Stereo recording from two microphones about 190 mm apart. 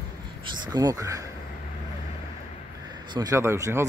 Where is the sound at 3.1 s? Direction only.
15° right (ahead or behind).